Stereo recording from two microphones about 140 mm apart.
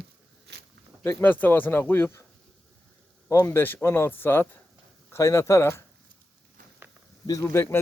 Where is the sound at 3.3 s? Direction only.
20° left (ahead or behind).